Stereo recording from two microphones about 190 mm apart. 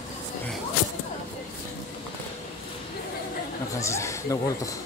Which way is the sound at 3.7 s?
15° left (ahead or behind).